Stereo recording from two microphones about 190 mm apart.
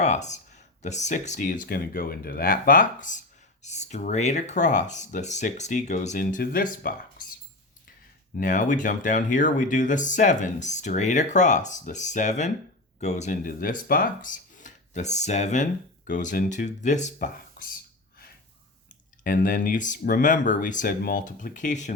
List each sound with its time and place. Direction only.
0.0 s speech: 40° left (ahead or behind)
8.4 s speech: 45° left (ahead or behind)
19.2 s speech: 45° left (ahead or behind)